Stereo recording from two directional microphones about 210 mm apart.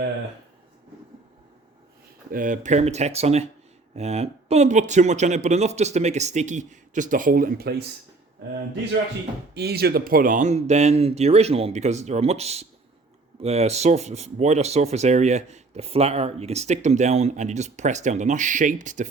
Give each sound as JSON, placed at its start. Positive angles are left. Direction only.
{"t": 2.3, "sound": "speech", "side_deg": -40}
{"t": 9.6, "sound": "speech", "side_deg": -50}